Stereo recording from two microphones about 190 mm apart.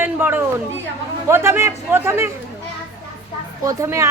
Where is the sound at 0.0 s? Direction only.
10° right (ahead or behind).